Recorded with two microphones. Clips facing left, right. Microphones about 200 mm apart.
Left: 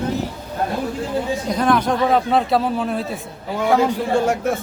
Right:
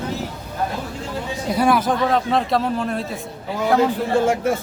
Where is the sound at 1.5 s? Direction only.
5° right (ahead or behind).